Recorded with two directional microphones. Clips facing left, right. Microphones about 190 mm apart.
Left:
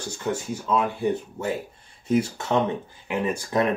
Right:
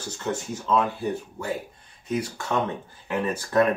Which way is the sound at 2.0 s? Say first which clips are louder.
Left 5 dB; 25° left (ahead or behind).